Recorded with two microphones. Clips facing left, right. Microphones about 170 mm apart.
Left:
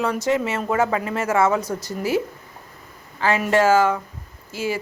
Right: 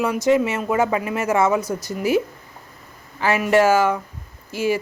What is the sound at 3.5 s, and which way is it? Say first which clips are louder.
A woman's voice: right 1 dB; 10° right (ahead or behind).